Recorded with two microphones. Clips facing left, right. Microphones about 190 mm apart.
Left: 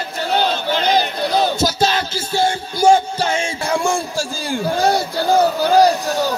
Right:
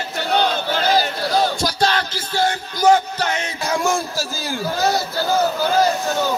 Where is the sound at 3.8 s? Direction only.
15° left (ahead or behind).